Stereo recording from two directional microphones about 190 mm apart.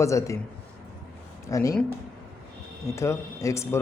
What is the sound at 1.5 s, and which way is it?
Speech, 15° left (ahead or behind).